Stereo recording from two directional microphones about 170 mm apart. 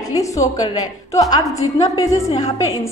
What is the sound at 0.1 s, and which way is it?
A woman's voice, 20° left (ahead or behind).